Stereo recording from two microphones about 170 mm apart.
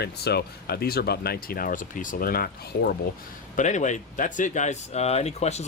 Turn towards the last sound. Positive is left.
turn(degrees=40)  # may be behind; listen again after turning